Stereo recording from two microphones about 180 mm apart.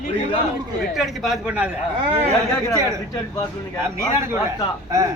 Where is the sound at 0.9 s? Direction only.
Centre (ahead or behind).